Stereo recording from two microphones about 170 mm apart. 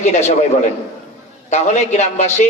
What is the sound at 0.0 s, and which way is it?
Speech, 40° left (ahead or behind).